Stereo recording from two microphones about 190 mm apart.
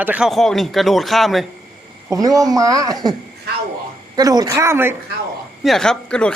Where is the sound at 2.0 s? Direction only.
20° right (ahead or behind).